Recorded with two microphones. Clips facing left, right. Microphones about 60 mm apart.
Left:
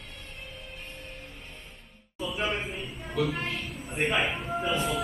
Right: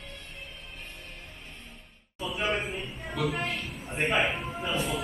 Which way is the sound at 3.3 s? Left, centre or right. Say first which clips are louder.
Right 1 dB; right.